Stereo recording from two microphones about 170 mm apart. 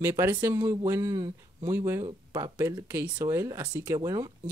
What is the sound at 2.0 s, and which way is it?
Speech, 30° right (ahead or behind).